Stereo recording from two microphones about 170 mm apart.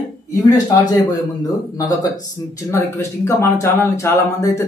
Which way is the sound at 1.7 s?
20° left (ahead or behind).